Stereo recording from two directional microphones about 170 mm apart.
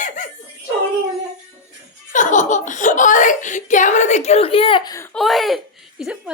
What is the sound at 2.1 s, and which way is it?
Speech, 45° left (ahead or behind).